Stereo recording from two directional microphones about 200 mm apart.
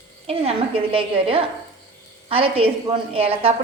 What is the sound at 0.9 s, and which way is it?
A woman's voice, 30° right (ahead or behind).